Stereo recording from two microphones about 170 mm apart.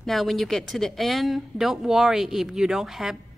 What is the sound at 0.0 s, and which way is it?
Speech, centre (ahead or behind).